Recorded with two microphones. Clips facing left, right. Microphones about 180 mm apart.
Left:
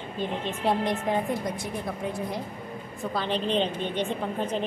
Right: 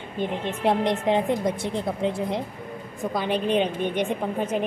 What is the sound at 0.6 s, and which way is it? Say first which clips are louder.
A woman's voice: right 4 dB; 20° right (ahead or behind).